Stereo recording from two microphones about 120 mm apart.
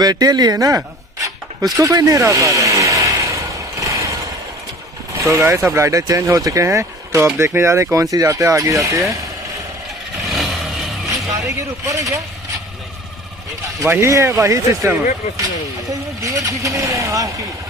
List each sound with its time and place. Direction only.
0.0 s chopping: 35° right (ahead or behind)
5.1 s speech: 25° right (ahead or behind)
10.2 s vehicle: centre (ahead or behind)
11.1 s speech: 30° right (ahead or behind)
13.8 s speech: 20° right (ahead or behind)
15.9 s speech: 30° right (ahead or behind)